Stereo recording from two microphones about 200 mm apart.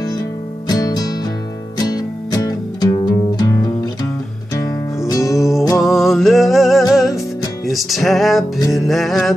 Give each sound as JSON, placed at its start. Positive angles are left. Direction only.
{"t": 0.7, "sound": "music", "side_deg": 20}
{"t": 5.8, "sound": "music", "side_deg": 0}